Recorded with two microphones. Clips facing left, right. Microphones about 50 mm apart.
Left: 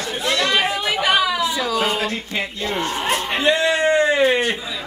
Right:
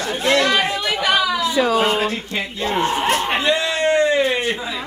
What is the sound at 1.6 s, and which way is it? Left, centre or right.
Speech, right.